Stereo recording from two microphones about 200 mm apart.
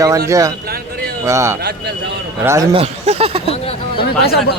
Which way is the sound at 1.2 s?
15° right (ahead or behind).